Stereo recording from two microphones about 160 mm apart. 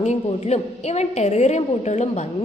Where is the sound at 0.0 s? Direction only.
45° left (ahead or behind).